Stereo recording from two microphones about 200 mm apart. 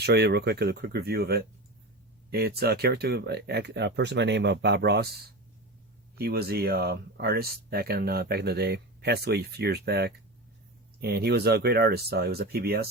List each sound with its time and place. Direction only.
0.0 s speech: 55° right (ahead or behind)
6.1 s speech: 50° right (ahead or behind)